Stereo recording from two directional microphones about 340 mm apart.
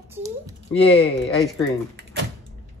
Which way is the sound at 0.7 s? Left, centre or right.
Centre.